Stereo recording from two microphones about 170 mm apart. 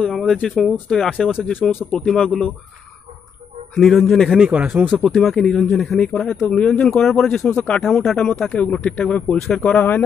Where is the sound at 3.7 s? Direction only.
Centre (ahead or behind).